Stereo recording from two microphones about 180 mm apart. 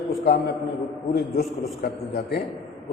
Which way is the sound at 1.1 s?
60° left (ahead or behind).